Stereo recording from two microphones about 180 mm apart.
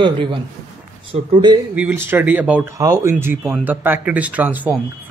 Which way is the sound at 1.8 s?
10° right (ahead or behind).